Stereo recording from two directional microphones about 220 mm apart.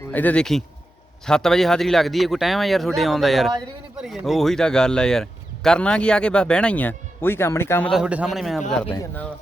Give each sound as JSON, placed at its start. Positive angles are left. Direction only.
{"t": 0.1, "sound": "speech", "side_deg": 5}
{"t": 7.9, "sound": "speech", "side_deg": -5}